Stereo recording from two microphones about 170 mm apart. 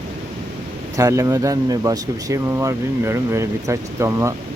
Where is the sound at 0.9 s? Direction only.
20° right (ahead or behind).